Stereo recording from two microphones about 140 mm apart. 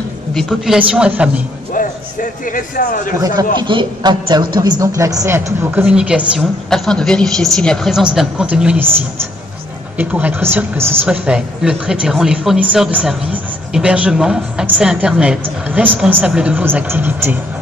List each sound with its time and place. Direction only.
0.3 s a woman's voice: 5° left (ahead or behind)
0.7 s speech: 10° right (ahead or behind)
1.7 s a man's voice: 70° left (ahead or behind)
3.2 s a man's voice: 30° right (ahead or behind); by 8.9 s 10° right (ahead or behind)
9.9 s speech: 10° right (ahead or behind)